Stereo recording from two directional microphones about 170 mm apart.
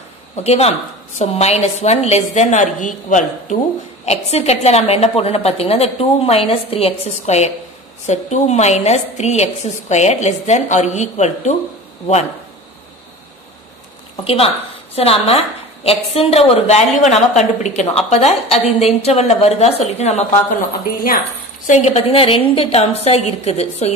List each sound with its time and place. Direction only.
0.4 s a woman's voice: 40° left (ahead or behind)
14.2 s a woman's voice: 35° left (ahead or behind)
21.6 s a woman's voice: 40° left (ahead or behind)